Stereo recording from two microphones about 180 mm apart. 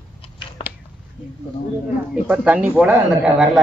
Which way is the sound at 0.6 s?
30° left (ahead or behind).